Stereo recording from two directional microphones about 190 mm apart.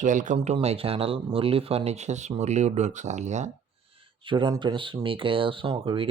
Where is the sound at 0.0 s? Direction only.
40° right (ahead or behind).